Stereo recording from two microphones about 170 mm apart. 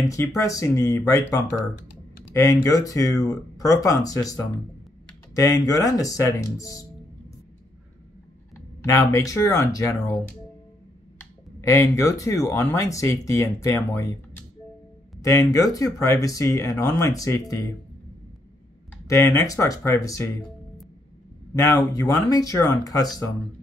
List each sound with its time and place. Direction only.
0.4 s speech: 20° left (ahead or behind)
8.5 s speech: 15° left (ahead or behind)
11.1 s speech: 15° left (ahead or behind)
19.0 s speech: 20° left (ahead or behind)
21.5 s speech: 15° left (ahead or behind)